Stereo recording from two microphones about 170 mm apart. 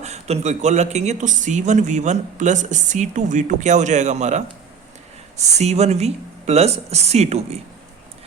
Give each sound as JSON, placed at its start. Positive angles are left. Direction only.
{"t": 0.0, "sound": "speech", "side_deg": -40}